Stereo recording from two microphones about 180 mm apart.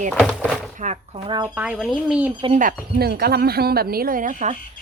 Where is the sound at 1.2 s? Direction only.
25° right (ahead or behind).